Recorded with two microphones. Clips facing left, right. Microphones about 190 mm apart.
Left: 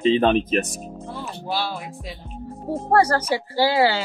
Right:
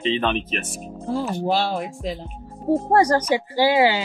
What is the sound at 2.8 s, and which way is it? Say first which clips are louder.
Speech: left 1 dB; 15° right (ahead or behind).